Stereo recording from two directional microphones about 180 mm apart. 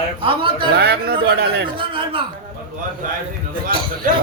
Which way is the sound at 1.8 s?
30° right (ahead or behind).